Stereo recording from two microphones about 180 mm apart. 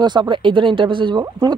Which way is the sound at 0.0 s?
25° right (ahead or behind).